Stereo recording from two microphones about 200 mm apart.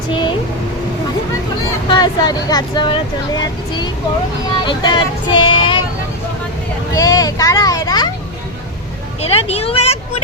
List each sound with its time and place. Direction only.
1.9 s speech: 20° left (ahead or behind)
4.6 s speech: 25° left (ahead or behind)
6.9 s speech: 15° left (ahead or behind)
9.3 s speech: 30° left (ahead or behind)